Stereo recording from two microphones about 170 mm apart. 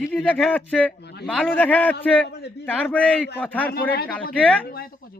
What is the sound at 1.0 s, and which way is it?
Speech, 75° left (ahead or behind).